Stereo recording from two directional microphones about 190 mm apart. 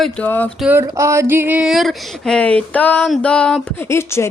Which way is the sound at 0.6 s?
10° right (ahead or behind).